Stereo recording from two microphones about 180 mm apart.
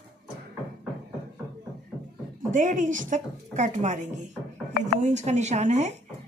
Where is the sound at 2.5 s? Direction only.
45° right (ahead or behind).